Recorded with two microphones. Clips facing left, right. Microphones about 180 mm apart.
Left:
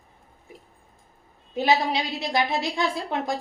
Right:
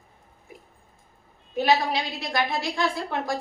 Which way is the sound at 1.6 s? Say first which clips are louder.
Even; 20° left (ahead or behind).